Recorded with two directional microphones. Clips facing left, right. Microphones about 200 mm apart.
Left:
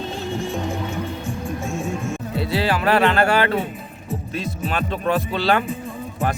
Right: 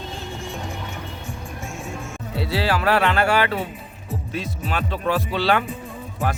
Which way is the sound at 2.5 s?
15° left (ahead or behind).